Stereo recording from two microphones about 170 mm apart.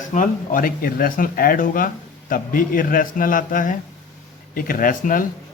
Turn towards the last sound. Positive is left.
turn(degrees=55)  # may be behind; listen again after turning